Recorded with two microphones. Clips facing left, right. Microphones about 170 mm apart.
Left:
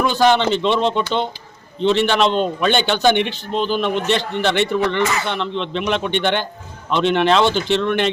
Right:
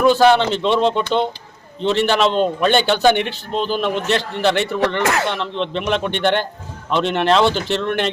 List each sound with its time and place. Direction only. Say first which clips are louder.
0.0 s a man's voice: right 3 dB; 5° right (ahead or behind)
5.0 s speech: right 3 dB; 65° right (ahead or behind)
5.3 s a man's voice: even; centre (ahead or behind)